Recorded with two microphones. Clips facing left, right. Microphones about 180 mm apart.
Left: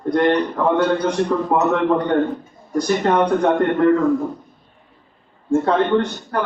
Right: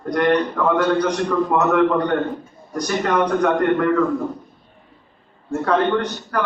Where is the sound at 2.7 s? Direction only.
25° left (ahead or behind).